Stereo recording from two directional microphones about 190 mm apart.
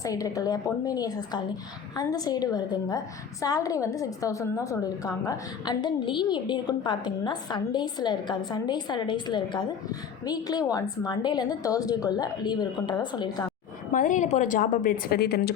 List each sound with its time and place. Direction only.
0.0 s a woman's voice: 20° left (ahead or behind)
13.9 s a woman's voice: 45° left (ahead or behind)